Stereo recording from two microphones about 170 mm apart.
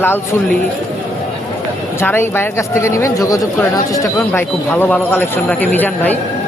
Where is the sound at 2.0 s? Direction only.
10° left (ahead or behind).